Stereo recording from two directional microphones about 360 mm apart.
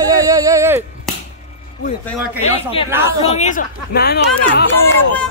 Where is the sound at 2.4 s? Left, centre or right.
Centre.